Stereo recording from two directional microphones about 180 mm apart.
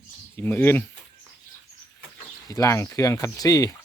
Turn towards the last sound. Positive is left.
turn(degrees=20)  # may be behind; listen again after turning